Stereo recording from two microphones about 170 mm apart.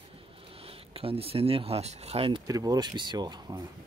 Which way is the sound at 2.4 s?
20° right (ahead or behind).